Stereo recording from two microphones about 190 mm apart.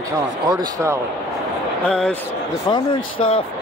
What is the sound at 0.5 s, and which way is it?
Speech, 15° right (ahead or behind).